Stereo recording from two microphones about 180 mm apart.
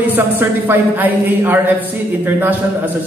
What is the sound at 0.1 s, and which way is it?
A man's voice, 10° right (ahead or behind).